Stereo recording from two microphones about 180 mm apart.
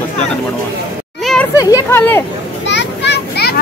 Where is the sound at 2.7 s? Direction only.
75° left (ahead or behind).